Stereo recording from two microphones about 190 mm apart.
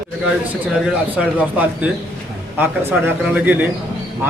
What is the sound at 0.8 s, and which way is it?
A man's voice, 5° right (ahead or behind).